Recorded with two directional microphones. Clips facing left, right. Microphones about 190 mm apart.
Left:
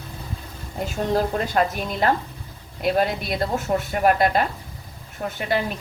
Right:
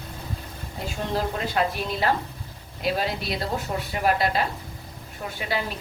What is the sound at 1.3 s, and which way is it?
A woman's voice, 45° left (ahead or behind).